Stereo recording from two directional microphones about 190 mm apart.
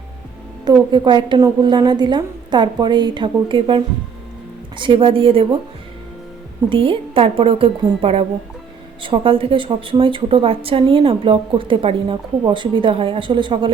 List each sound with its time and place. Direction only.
0.6 s speech: 25° right (ahead or behind)
6.7 s speech: 30° right (ahead or behind)